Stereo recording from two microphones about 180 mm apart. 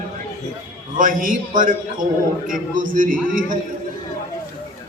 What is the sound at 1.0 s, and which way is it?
A man's voice, 50° right (ahead or behind).